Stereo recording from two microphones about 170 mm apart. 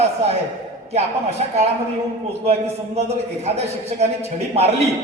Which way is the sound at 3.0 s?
40° right (ahead or behind).